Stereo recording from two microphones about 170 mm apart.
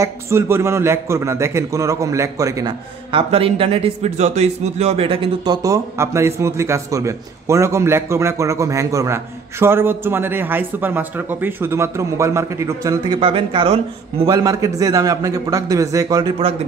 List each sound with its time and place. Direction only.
0.0 s a man's voice: 15° right (ahead or behind)
3.1 s a man's voice: 35° right (ahead or behind); by 13.2 s 20° right (ahead or behind)
13.2 s a man's voice: 30° right (ahead or behind)
14.3 s a man's voice: 20° right (ahead or behind)